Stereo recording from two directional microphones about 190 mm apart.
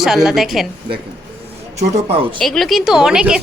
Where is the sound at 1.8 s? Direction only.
30° right (ahead or behind).